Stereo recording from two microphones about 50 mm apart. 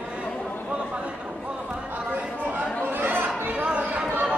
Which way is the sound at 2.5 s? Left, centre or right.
Right.